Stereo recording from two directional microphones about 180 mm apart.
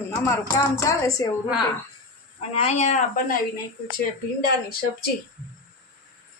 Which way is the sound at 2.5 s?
35° left (ahead or behind).